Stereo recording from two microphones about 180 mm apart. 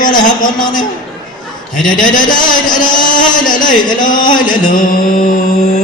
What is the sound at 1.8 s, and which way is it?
A man's voice, 50° left (ahead or behind).